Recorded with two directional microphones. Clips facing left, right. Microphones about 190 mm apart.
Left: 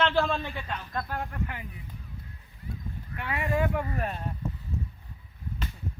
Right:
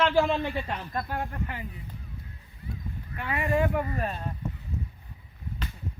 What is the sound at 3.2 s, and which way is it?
Speech, centre (ahead or behind).